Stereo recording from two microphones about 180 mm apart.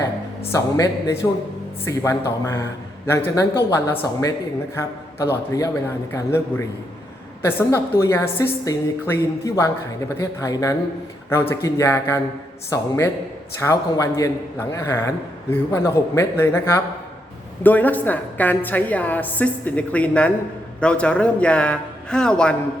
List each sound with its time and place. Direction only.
0.5 s speech: 20° left (ahead or behind)